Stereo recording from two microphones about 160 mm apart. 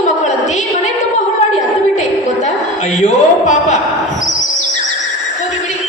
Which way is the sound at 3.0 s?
50° left (ahead or behind).